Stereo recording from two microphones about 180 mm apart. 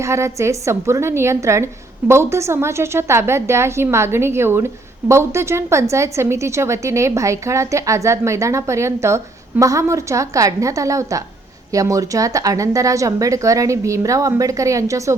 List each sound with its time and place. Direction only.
0.0 s a woman's voice: 15° right (ahead or behind)